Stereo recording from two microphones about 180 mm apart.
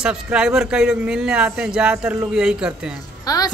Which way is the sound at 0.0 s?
5° right (ahead or behind).